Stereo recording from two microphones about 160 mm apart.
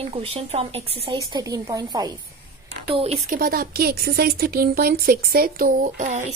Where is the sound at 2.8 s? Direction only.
40° right (ahead or behind).